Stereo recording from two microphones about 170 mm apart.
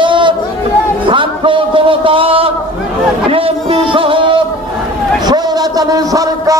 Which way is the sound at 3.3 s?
35° right (ahead or behind).